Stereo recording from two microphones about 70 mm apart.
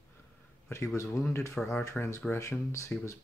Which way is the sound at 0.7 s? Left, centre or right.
Left.